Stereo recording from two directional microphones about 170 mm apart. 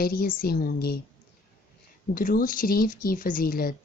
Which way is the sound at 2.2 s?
55° left (ahead or behind).